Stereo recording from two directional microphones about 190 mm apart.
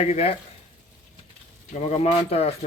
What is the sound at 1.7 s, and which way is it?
Speech, 35° left (ahead or behind).